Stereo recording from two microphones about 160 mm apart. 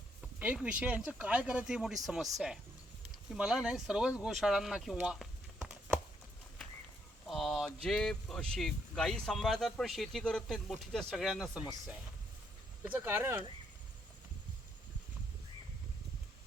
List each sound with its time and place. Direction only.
0.3 s speech: 10° right (ahead or behind)
3.3 s speech: 5° right (ahead or behind)
7.3 s speech: centre (ahead or behind)
12.8 s speech: 10° right (ahead or behind)